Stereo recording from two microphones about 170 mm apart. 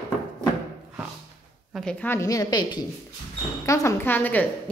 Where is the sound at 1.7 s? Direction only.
Centre (ahead or behind).